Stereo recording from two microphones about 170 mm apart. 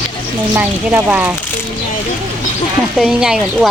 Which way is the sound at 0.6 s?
10° right (ahead or behind).